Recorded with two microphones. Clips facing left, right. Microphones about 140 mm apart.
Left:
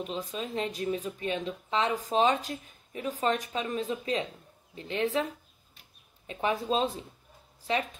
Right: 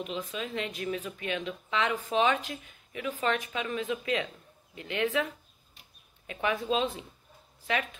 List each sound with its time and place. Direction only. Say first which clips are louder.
0.0 s speech: left 1 dB; 35° left (ahead or behind)